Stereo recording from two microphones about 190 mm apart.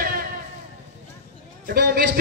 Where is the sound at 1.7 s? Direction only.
50° right (ahead or behind).